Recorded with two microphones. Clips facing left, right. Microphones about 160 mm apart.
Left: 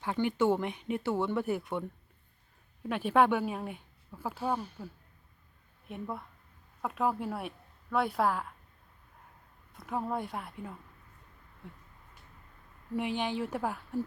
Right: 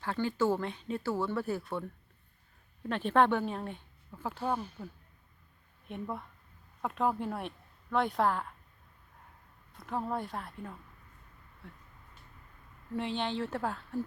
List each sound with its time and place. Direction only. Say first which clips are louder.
0.0 s speech: left 2 dB; 15° left (ahead or behind)
2.9 s speech: left 1 dB; 10° left (ahead or behind)
5.9 s a woman's voice: even; 5° left (ahead or behind)
9.7 s speech: left 1 dB; 10° left (ahead or behind)
12.9 s speech: left 1 dB; 15° left (ahead or behind)